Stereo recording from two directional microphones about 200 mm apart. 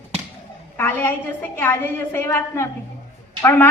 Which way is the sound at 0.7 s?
10° left (ahead or behind).